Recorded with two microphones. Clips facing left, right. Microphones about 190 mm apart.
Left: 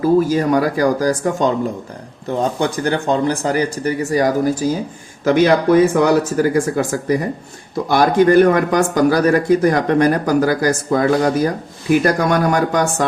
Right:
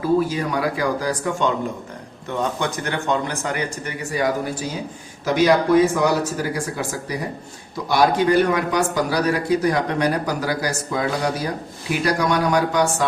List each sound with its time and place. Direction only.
0.0 s speech: 45° left (ahead or behind)
5.2 s speech: 55° left (ahead or behind)